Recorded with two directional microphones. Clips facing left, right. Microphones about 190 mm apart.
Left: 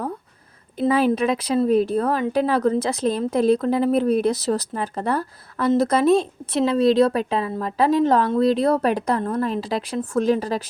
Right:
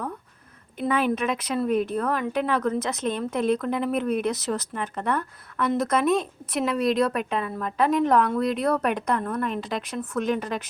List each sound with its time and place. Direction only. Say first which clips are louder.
0.8 s speech: left 5 dB; 35° left (ahead or behind)